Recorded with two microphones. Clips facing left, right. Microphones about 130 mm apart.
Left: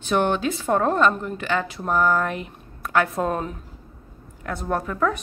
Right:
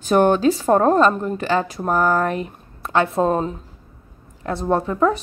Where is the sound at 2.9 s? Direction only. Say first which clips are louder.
Right 4 dB; 25° right (ahead or behind).